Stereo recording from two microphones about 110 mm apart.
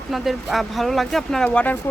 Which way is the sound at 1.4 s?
15° left (ahead or behind).